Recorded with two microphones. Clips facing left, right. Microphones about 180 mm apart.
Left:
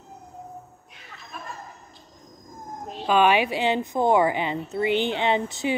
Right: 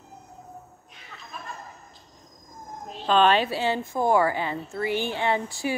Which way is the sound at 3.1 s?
10° left (ahead or behind).